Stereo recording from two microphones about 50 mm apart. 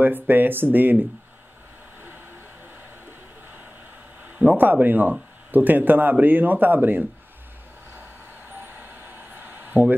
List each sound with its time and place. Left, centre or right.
0.0 s speech: right
4.4 s speech: right
7.9 s vehicle: right